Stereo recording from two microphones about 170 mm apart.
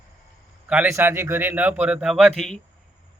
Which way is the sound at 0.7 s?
10° right (ahead or behind).